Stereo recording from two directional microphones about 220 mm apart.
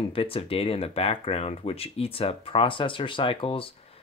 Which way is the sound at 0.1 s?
25° left (ahead or behind).